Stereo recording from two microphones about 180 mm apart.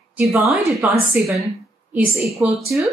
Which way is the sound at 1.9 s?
5° right (ahead or behind).